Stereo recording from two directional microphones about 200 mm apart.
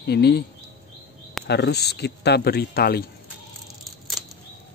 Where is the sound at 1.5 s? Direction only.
55° left (ahead or behind).